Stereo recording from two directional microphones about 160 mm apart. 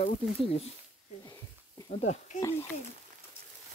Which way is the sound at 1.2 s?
20° left (ahead or behind).